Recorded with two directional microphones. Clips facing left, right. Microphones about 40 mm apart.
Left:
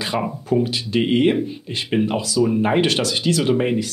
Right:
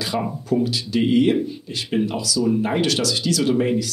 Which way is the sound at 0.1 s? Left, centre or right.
Left.